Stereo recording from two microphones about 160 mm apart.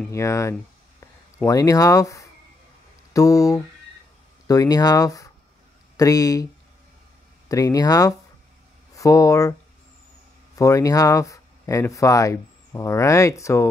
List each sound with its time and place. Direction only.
0.1 s speech: 20° left (ahead or behind)
3.1 s a sound: 20° left (ahead or behind)
4.5 s speech: 25° left (ahead or behind)
7.4 s speech: 20° left (ahead or behind)
10.6 s speech: 20° left (ahead or behind)